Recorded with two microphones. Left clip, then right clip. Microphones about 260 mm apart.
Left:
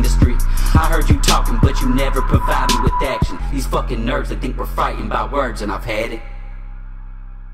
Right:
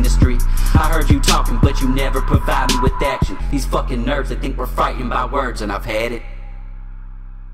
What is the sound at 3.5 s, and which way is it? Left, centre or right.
Speech, left.